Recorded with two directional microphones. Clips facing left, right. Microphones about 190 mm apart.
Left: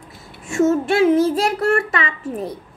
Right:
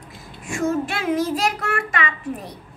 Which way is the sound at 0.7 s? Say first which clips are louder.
Left 7 dB; 25° left (ahead or behind).